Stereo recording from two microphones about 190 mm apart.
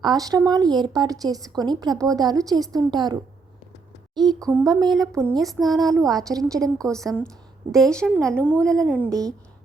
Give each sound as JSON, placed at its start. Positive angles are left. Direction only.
{"t": 0.0, "sound": "a woman's voice", "side_deg": -20}
{"t": 4.2, "sound": "a woman's voice", "side_deg": -20}
{"t": 5.4, "sound": "a woman's voice", "side_deg": 0}
{"t": 5.7, "sound": "a woman's voice", "side_deg": -20}
{"t": 6.9, "sound": "a woman's voice", "side_deg": 0}